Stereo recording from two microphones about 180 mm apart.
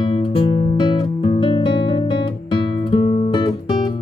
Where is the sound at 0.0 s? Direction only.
30° left (ahead or behind).